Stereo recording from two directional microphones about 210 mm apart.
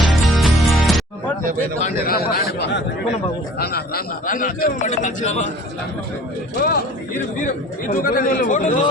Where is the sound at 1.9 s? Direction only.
45° left (ahead or behind).